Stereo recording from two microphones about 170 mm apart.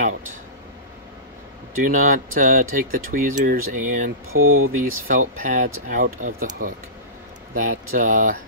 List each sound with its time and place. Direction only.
1.8 s speech: 50° right (ahead or behind)